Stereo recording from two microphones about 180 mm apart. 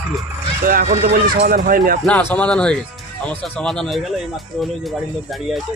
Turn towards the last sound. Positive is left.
turn(degrees=0)  # may be behind; listen again after turning